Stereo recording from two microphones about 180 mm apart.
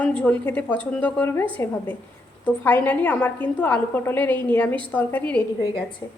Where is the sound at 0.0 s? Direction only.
5° left (ahead or behind).